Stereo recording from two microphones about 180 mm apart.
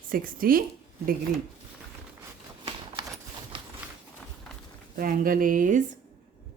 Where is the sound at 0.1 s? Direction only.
50° right (ahead or behind).